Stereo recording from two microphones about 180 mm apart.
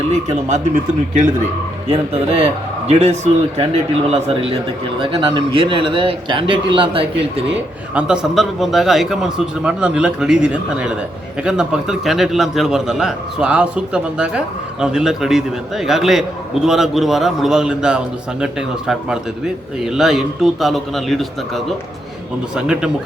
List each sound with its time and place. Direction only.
0.1 s a man's voice: 40° right (ahead or behind)
1.9 s a man's voice: 35° right (ahead or behind)
7.9 s a man's voice: 5° right (ahead or behind)